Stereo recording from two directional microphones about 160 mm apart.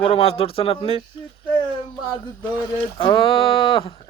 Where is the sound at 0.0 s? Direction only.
35° left (ahead or behind).